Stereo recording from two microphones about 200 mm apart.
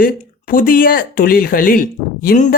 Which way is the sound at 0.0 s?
45° left (ahead or behind).